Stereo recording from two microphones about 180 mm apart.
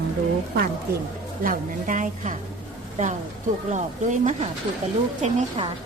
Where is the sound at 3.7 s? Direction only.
40° right (ahead or behind).